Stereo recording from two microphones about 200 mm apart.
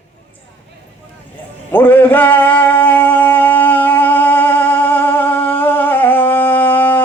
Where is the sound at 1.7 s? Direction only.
10° left (ahead or behind).